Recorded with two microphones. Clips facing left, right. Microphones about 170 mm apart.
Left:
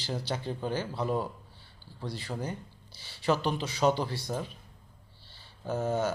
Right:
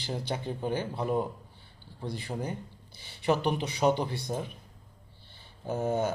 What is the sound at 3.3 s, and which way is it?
Speech, 60° right (ahead or behind).